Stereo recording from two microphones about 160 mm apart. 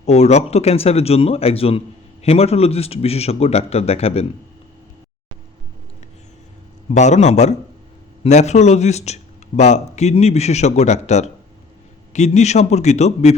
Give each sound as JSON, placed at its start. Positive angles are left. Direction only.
{"t": 0.0, "sound": "a man's voice", "side_deg": 45}
{"t": 6.9, "sound": "speech", "side_deg": 45}